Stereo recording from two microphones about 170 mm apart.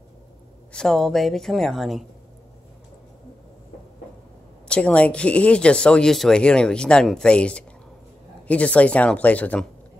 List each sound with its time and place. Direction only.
0.7 s speech: 5° left (ahead or behind)
4.6 s speech: 5° left (ahead or behind)